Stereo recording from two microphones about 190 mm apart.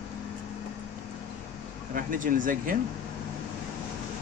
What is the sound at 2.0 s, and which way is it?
Speech, 45° right (ahead or behind).